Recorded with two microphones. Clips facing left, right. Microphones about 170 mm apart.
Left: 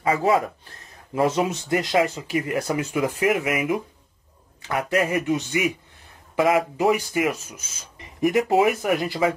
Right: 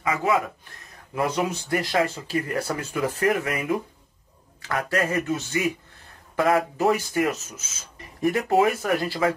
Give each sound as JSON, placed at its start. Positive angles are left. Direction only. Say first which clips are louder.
{"t": 0.0, "sound": "speech", "louder": "left 3 dB", "side_deg": 35}